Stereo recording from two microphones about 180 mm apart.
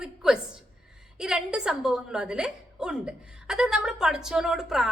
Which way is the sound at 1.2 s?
5° right (ahead or behind).